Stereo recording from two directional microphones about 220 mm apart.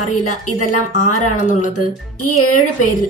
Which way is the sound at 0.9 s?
35° left (ahead or behind).